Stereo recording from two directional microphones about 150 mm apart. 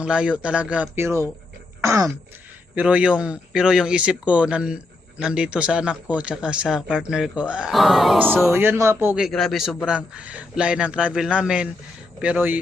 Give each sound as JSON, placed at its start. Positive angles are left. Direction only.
{"t": 0.0, "sound": "a man's voice", "side_deg": -5}
{"t": 1.8, "sound": "throat clearing", "side_deg": -20}
{"t": 2.7, "sound": "a man's voice", "side_deg": -5}
{"t": 8.4, "sound": "a man's voice", "side_deg": -15}